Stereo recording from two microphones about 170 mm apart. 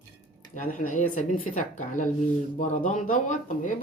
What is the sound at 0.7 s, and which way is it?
Speech, 50° left (ahead or behind).